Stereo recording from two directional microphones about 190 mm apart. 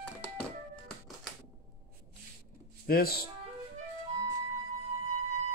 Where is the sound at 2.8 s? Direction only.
55° left (ahead or behind).